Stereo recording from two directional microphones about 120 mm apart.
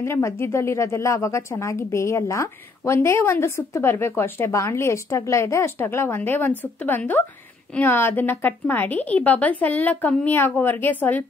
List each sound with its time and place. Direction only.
0.0 s a woman's voice: 20° left (ahead or behind)